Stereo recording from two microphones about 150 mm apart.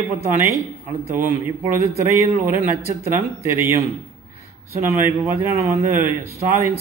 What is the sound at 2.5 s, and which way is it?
A man's voice, 15° right (ahead or behind).